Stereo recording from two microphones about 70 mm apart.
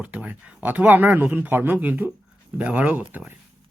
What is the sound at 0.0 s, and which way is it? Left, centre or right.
Speech, right.